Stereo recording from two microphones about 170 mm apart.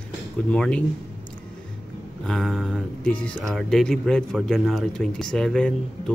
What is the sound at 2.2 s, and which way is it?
Speech, centre (ahead or behind).